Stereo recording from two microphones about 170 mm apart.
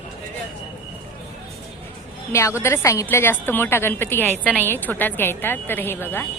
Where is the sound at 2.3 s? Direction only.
15° left (ahead or behind).